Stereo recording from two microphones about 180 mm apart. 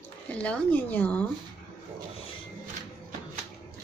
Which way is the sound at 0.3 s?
5° left (ahead or behind).